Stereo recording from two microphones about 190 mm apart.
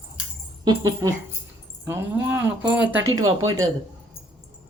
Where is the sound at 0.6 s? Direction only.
20° right (ahead or behind).